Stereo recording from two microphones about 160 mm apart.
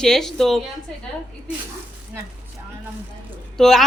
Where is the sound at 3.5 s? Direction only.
Centre (ahead or behind).